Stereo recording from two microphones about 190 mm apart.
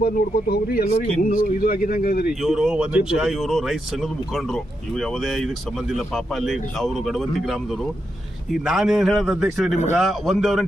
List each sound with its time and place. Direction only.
0.0 s speech: 55° left (ahead or behind)
2.4 s speech: 5° right (ahead or behind)
8.6 s speech: centre (ahead or behind)